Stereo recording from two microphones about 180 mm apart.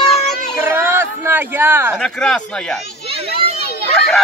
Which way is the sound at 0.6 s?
15° right (ahead or behind).